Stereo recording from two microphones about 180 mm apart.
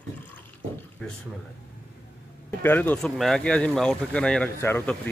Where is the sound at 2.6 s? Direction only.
10° left (ahead or behind).